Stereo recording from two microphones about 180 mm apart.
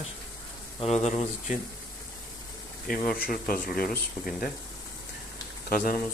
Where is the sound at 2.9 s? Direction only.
50° left (ahead or behind).